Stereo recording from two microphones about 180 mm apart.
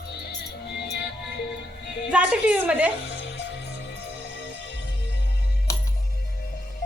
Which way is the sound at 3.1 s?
75° left (ahead or behind).